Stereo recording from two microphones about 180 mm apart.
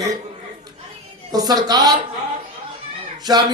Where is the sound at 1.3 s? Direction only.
20° right (ahead or behind).